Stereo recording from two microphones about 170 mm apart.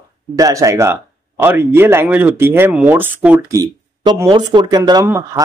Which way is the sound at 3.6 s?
25° right (ahead or behind).